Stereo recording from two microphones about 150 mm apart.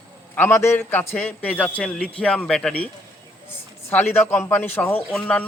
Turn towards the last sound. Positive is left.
turn(degrees=10)  # may be behind; listen again after turning